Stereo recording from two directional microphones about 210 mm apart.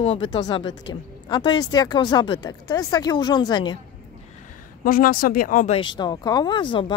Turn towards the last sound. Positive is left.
turn(degrees=20)  # may be behind; listen again after turning